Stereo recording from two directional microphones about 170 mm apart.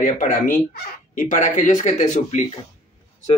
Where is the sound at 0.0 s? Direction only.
55° left (ahead or behind).